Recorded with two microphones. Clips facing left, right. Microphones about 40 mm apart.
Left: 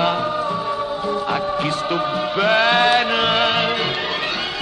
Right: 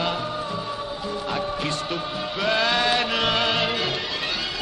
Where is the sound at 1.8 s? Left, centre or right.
Left.